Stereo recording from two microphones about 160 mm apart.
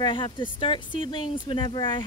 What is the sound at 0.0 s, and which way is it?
Speech, 30° left (ahead or behind).